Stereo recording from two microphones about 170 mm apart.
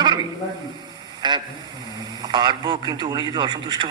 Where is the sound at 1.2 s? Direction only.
25° right (ahead or behind).